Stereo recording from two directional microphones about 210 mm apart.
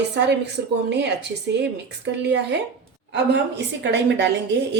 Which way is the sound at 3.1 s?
55° right (ahead or behind).